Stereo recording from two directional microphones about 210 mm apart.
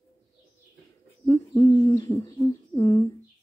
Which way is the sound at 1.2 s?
15° left (ahead or behind).